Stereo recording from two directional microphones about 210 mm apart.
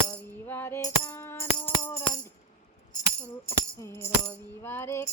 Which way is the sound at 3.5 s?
15° left (ahead or behind).